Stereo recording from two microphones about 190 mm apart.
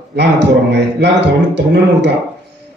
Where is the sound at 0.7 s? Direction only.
65° right (ahead or behind).